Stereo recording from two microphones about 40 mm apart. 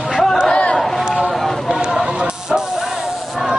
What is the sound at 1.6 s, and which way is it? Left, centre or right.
Run, centre.